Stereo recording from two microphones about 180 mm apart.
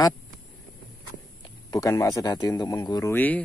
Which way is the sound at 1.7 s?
15° left (ahead or behind).